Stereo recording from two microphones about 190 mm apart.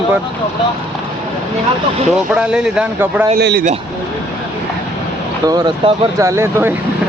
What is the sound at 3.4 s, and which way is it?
Speech, 60° right (ahead or behind).